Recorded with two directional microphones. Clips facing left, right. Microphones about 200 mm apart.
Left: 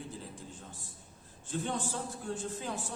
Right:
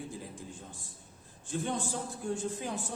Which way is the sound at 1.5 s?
15° right (ahead or behind).